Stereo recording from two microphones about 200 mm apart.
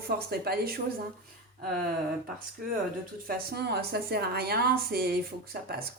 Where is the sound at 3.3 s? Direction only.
55° right (ahead or behind).